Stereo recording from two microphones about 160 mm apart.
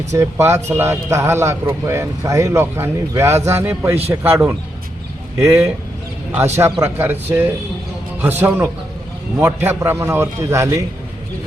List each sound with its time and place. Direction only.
0.1 s speech: 15° right (ahead or behind)